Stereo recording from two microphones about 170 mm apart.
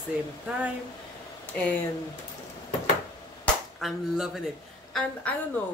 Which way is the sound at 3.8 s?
Centre (ahead or behind).